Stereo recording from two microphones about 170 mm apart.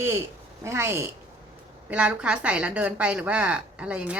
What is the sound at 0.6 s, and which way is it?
A woman's voice, 15° right (ahead or behind).